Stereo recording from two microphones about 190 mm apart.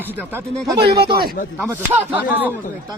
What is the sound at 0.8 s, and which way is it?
Speech, 55° right (ahead or behind).